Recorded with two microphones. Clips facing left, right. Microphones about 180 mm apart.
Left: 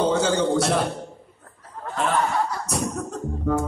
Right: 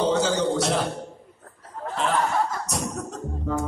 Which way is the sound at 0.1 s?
50° left (ahead or behind).